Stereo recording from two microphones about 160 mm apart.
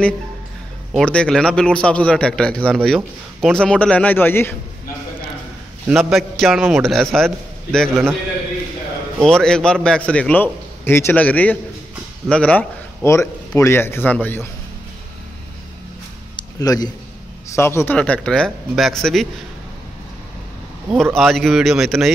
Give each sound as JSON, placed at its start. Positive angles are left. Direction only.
{"t": 0.9, "sound": "a man's voice", "side_deg": 5}
{"t": 5.9, "sound": "a man's voice", "side_deg": -5}
{"t": 9.2, "sound": "a man's voice", "side_deg": 5}
{"t": 16.3, "sound": "a sound", "side_deg": 25}
{"t": 17.5, "sound": "a man's voice", "side_deg": 15}
{"t": 20.9, "sound": "a man's voice", "side_deg": 0}